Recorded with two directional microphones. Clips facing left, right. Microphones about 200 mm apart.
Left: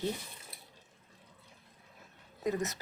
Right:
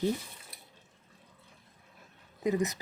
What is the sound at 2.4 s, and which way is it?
Speech, 15° right (ahead or behind).